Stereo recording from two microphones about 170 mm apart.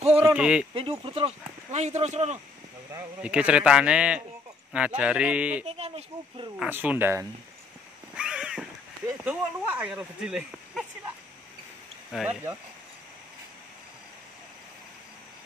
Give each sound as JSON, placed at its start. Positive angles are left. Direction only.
{"t": 0.2, "sound": "speech", "side_deg": -10}
{"t": 0.7, "sound": "speech", "side_deg": -35}
{"t": 2.9, "sound": "speech", "side_deg": -10}
{"t": 5.7, "sound": "speech", "side_deg": -35}
{"t": 6.6, "sound": "speech", "side_deg": -10}
{"t": 8.2, "sound": "a sound", "side_deg": -5}
{"t": 9.0, "sound": "speech", "side_deg": -10}
{"t": 12.1, "sound": "speech", "side_deg": -5}